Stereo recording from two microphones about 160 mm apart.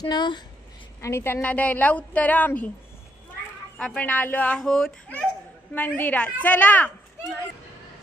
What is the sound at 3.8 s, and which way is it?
A woman's voice, 5° left (ahead or behind).